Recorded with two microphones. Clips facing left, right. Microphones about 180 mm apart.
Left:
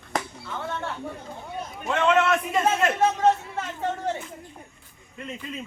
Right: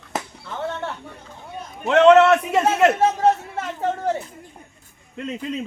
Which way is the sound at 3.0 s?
40° right (ahead or behind).